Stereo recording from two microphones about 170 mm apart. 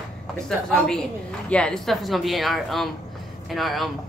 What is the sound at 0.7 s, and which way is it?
Speech, 5° left (ahead or behind).